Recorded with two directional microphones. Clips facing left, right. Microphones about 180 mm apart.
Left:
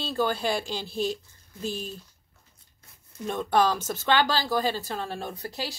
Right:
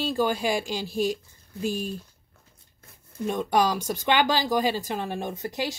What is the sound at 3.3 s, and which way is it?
Speech, 10° right (ahead or behind).